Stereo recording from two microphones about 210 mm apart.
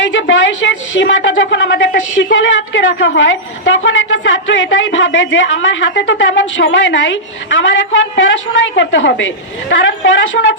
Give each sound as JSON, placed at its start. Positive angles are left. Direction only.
{"t": 0.0, "sound": "a woman's voice", "side_deg": 60}